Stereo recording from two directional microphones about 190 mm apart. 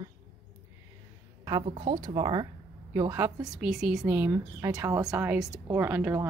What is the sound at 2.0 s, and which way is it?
Speech, 25° right (ahead or behind).